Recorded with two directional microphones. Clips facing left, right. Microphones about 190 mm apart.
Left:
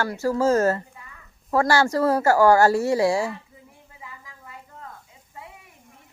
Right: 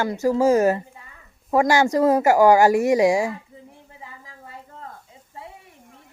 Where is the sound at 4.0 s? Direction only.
30° right (ahead or behind).